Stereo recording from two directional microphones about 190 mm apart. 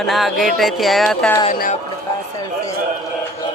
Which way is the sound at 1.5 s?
45° left (ahead or behind).